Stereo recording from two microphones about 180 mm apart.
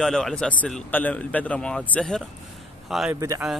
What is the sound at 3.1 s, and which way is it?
Speech, 15° right (ahead or behind).